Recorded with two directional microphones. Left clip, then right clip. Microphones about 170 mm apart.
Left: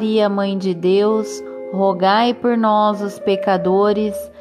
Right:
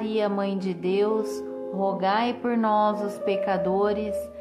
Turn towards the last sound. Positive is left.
turn(degrees=35)  # may be behind; listen again after turning